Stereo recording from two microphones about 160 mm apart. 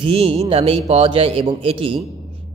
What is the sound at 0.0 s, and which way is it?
A man's voice, 35° right (ahead or behind).